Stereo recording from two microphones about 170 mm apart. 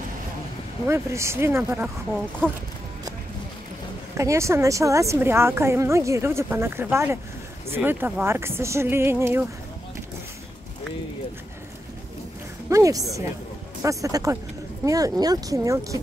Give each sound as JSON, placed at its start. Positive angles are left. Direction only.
{"t": 0.8, "sound": "a woman's voice", "side_deg": -15}
{"t": 4.2, "sound": "a woman's voice", "side_deg": -15}
{"t": 12.6, "sound": "speech", "side_deg": -20}